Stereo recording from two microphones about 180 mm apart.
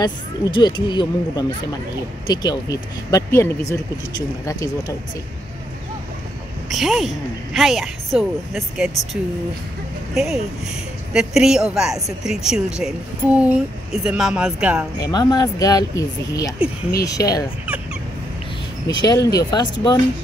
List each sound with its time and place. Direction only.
0.0 s speech: 25° left (ahead or behind)
4.5 s speech: 20° left (ahead or behind)
6.7 s a woman's voice: centre (ahead or behind)
15.0 s speech: 20° left (ahead or behind)
18.9 s speech: 20° left (ahead or behind)